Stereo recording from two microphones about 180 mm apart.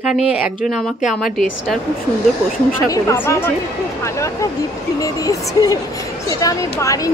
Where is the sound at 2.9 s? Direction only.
15° left (ahead or behind).